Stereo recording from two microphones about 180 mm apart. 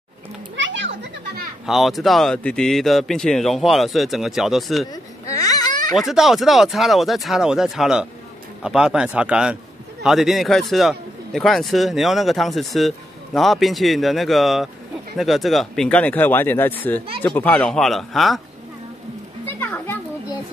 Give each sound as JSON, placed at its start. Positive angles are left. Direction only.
{"t": 0.6, "sound": "children playing", "side_deg": -90}
{"t": 1.7, "sound": "a man's voice", "side_deg": 0}
{"t": 4.9, "sound": "baby cry", "side_deg": 20}
{"t": 5.9, "sound": "a man's voice", "side_deg": 0}
{"t": 19.4, "sound": "children playing", "side_deg": 10}